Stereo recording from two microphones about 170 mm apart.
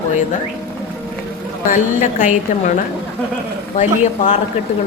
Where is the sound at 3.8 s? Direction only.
45° left (ahead or behind).